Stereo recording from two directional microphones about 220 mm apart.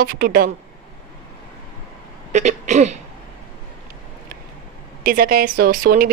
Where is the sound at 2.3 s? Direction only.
30° right (ahead or behind).